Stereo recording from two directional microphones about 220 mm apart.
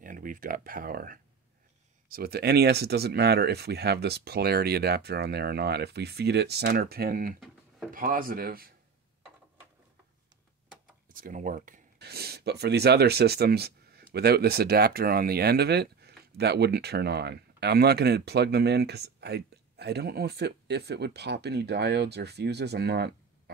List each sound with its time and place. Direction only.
0.0 s speech: 40° right (ahead or behind)
11.1 s speech: 40° right (ahead or behind)